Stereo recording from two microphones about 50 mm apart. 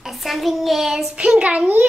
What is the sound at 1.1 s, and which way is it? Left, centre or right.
Speech, right.